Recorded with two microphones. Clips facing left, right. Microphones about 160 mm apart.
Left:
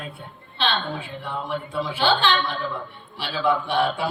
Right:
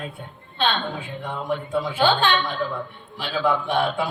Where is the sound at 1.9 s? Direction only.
50° right (ahead or behind).